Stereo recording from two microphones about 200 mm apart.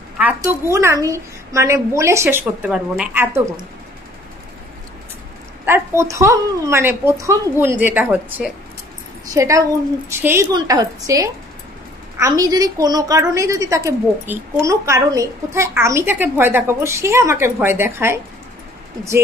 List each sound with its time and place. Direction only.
0.4 s a woman's voice: 15° right (ahead or behind)
5.7 s a woman's voice: 15° right (ahead or behind)